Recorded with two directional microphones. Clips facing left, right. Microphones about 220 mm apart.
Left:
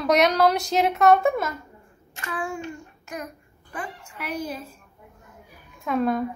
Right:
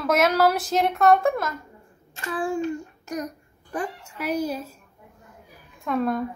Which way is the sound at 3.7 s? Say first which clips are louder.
Right 5 dB; 45° right (ahead or behind).